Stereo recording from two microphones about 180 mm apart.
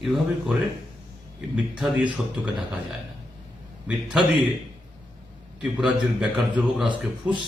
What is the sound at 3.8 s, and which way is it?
Speech, 5° right (ahead or behind).